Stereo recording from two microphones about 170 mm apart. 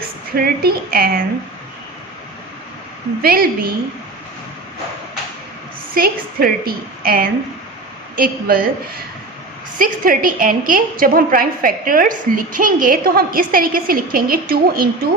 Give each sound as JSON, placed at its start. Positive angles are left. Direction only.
{"t": 0.3, "sound": "a woman's voice", "side_deg": -65}
{"t": 3.2, "sound": "a woman's voice", "side_deg": -60}
{"t": 5.9, "sound": "a woman's voice", "side_deg": -60}
{"t": 9.7, "sound": "a woman's voice", "side_deg": -55}